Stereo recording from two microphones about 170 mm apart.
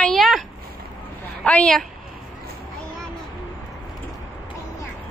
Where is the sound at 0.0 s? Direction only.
Centre (ahead or behind).